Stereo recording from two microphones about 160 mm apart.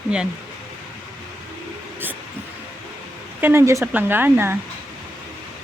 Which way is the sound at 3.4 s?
15° right (ahead or behind).